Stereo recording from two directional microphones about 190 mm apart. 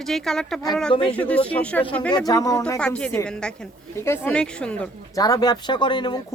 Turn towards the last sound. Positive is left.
turn(degrees=25)  # may be behind; listen again after turning